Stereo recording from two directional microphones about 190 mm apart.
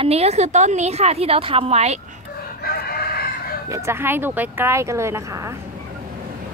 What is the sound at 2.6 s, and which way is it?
Crowing, 55° left (ahead or behind).